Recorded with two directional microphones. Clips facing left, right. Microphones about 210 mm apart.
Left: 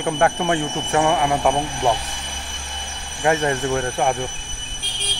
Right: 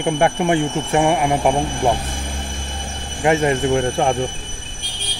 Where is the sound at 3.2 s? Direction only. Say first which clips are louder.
Right 3 dB; 20° right (ahead or behind).